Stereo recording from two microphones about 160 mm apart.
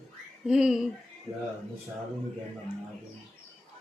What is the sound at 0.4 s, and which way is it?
Speech, 5° right (ahead or behind).